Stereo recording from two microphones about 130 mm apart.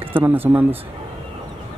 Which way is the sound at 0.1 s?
15° right (ahead or behind).